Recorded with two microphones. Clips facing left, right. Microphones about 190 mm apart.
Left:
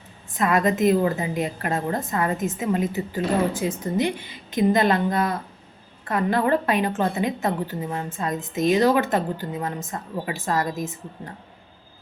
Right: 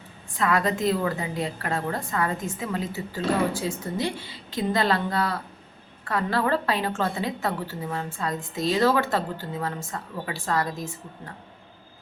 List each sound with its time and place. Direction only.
0.3 s a woman's voice: 20° left (ahead or behind)